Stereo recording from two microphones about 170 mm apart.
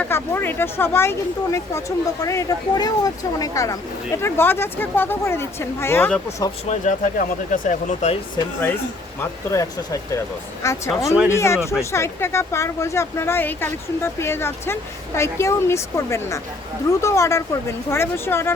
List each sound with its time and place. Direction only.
0.0 s speech: 10° left (ahead or behind)
6.7 s speech: 45° left (ahead or behind)
9.2 s speech: 20° left (ahead or behind)